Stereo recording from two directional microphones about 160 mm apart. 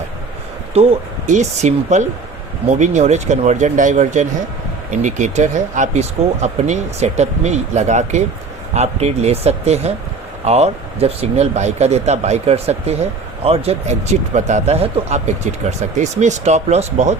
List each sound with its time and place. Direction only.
0.7 s speech: 40° right (ahead or behind)